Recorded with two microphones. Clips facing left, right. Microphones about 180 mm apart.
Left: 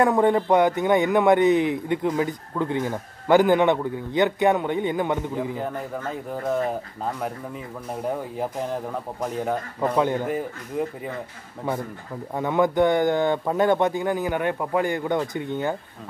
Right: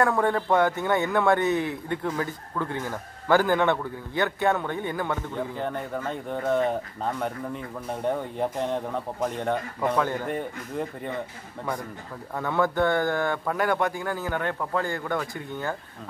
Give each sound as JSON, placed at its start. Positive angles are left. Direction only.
{"t": 0.0, "sound": "a man's voice", "side_deg": 20}
{"t": 5.3, "sound": "speech", "side_deg": 5}
{"t": 9.9, "sound": "a man's voice", "side_deg": 15}
{"t": 10.2, "sound": "speech", "side_deg": 5}
{"t": 12.4, "sound": "a man's voice", "side_deg": 15}